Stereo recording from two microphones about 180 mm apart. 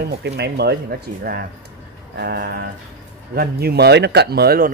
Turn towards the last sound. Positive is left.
turn(degrees=-60)  # may be behind; listen again after turning